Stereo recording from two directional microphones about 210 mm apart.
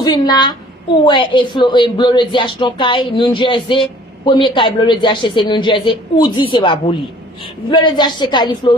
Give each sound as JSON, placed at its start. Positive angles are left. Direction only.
{"t": 0.0, "sound": "speech", "side_deg": 20}